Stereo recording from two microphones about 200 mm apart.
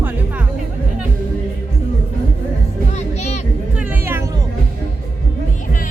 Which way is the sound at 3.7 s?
10° right (ahead or behind).